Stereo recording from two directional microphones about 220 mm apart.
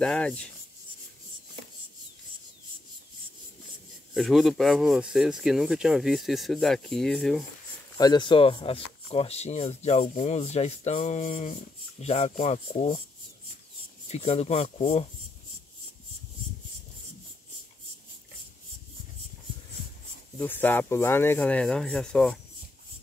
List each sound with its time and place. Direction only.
0.0 s speech: 5° left (ahead or behind)
4.1 s speech: centre (ahead or behind)
8.0 s speech: 20° left (ahead or behind)
14.0 s speech: 30° left (ahead or behind)
20.3 s speech: 10° left (ahead or behind)